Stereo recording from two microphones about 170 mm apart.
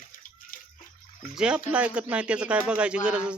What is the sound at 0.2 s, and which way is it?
Bathtub, 55° left (ahead or behind).